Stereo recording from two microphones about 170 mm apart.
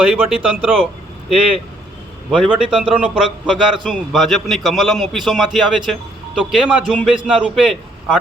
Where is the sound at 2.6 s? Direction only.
5° right (ahead or behind).